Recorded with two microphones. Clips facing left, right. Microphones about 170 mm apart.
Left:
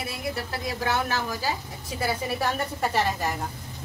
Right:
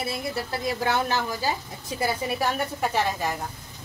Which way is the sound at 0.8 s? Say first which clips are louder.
Even; 20° right (ahead or behind).